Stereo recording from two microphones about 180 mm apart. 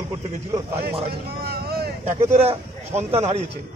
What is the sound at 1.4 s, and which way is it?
Vehicle, 60° right (ahead or behind).